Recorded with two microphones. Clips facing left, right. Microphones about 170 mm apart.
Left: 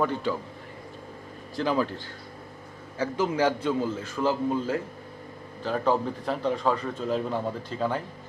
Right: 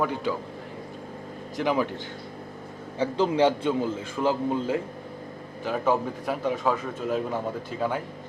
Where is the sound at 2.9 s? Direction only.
30° right (ahead or behind).